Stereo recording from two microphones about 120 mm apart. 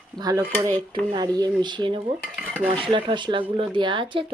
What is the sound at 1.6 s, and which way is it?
Speech, 40° right (ahead or behind).